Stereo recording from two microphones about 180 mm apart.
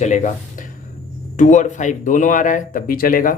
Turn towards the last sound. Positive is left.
turn(degrees=50)  # may be behind; listen again after turning